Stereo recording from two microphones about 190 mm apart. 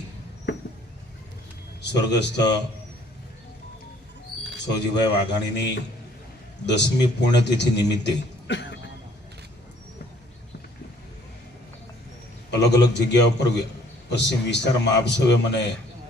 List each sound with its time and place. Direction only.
1.8 s a man's voice: 65° left (ahead or behind)
4.6 s a man's voice: 65° left (ahead or behind)
12.5 s a man's voice: 65° left (ahead or behind)